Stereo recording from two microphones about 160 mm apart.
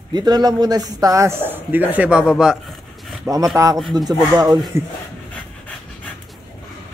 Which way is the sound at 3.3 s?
15° right (ahead or behind).